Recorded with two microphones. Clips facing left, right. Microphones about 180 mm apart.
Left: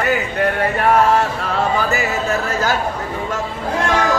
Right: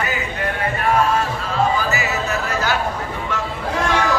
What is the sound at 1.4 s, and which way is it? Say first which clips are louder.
Music: left 1 dB; 65° left (ahead or behind).